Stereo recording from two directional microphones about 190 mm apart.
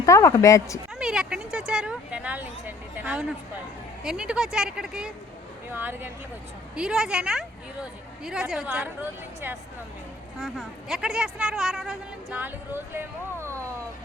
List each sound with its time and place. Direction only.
0.0 s speech: 15° left (ahead or behind)
0.9 s a sound: 5° right (ahead or behind)
4.0 s a woman's voice: 5° right (ahead or behind)